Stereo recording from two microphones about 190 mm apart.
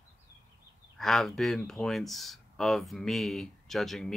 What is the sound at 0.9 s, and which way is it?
Speech, centre (ahead or behind).